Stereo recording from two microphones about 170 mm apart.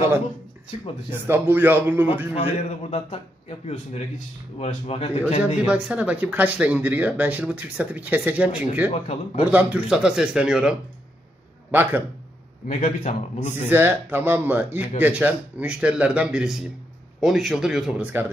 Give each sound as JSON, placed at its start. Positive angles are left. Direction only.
{"t": 1.2, "sound": "speech", "side_deg": -10}
{"t": 2.3, "sound": "a man's voice", "side_deg": 35}
{"t": 5.7, "sound": "speech", "side_deg": -5}
{"t": 12.6, "sound": "a man's voice", "side_deg": 45}
{"t": 13.7, "sound": "speech", "side_deg": -10}